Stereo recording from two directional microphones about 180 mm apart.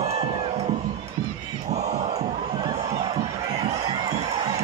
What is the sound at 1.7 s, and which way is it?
Crowd, 40° right (ahead or behind).